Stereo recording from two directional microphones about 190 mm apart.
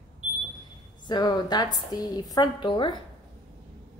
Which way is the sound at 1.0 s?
20° left (ahead or behind).